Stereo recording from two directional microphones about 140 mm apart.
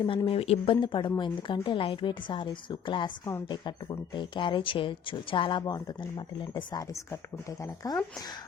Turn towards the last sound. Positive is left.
turn(degrees=25)  # may be behind; listen again after turning